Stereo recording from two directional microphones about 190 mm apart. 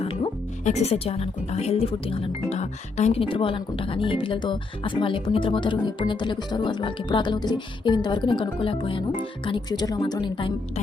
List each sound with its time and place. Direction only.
0.6 s speech: 35° left (ahead or behind)